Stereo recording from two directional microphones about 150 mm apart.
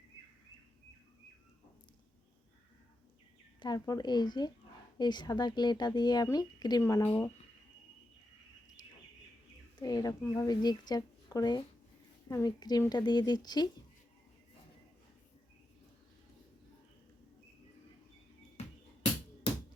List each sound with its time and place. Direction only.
3.6 s speech: 25° left (ahead or behind)
9.7 s speech: 25° left (ahead or behind)